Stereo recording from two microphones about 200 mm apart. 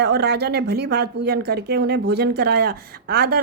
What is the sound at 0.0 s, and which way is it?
Speech, 55° right (ahead or behind).